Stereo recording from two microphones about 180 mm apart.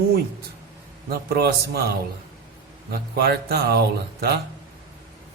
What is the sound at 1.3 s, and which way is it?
Speech, 60° right (ahead or behind).